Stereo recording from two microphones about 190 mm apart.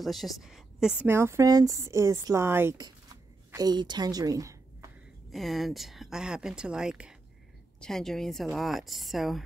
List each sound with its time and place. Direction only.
0.0 s a woman's voice: centre (ahead or behind); by 4.6 s 20° right (ahead or behind)
5.3 s speech: centre (ahead or behind)